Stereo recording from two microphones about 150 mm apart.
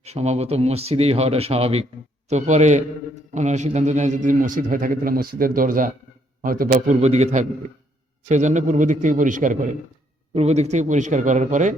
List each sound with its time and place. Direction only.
0.0 s a man's voice: 45° right (ahead or behind)
10.3 s speech: 45° right (ahead or behind)